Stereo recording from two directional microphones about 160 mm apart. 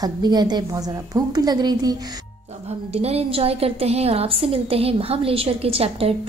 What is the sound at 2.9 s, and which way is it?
A woman's voice, 40° right (ahead or behind).